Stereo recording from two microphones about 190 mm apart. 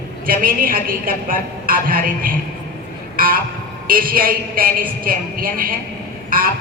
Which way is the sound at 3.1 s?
45° right (ahead or behind).